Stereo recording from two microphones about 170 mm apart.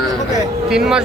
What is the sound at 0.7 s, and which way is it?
Speech, 5° right (ahead or behind).